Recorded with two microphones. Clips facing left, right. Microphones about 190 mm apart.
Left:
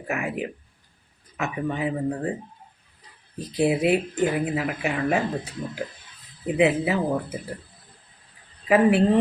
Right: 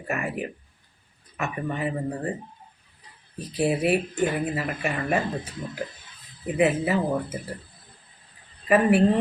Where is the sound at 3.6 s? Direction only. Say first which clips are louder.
Left 2 dB; 20° left (ahead or behind).